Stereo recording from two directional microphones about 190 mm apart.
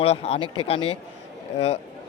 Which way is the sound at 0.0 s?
30° left (ahead or behind).